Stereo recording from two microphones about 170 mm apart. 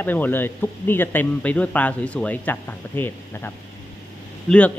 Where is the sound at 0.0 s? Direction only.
10° left (ahead or behind).